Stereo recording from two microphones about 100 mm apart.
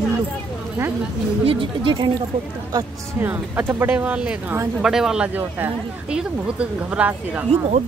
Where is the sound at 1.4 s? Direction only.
65° right (ahead or behind).